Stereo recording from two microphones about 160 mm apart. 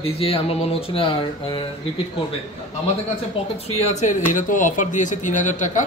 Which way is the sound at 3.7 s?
45° left (ahead or behind).